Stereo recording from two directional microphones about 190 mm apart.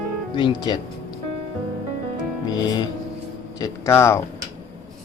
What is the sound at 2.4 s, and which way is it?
Music, 20° left (ahead or behind).